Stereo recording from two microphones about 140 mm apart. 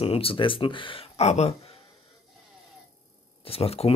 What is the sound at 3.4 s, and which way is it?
Speech, 45° left (ahead or behind).